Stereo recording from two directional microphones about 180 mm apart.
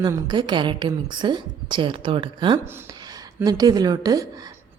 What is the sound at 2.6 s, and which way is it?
A woman's voice, 15° right (ahead or behind).